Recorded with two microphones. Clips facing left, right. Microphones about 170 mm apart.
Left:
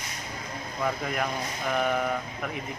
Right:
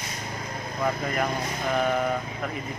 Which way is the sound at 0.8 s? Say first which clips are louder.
Right 2 dB; centre (ahead or behind).